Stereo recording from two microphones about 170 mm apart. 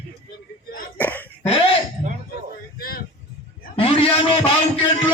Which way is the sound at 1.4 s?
35° left (ahead or behind).